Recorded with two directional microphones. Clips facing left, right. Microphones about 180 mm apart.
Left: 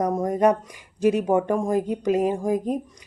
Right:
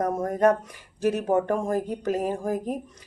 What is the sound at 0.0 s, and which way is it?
Speech, 15° left (ahead or behind).